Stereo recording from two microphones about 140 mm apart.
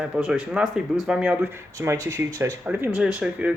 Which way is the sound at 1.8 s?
20° right (ahead or behind).